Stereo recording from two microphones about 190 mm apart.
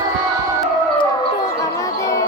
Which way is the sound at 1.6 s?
15° left (ahead or behind).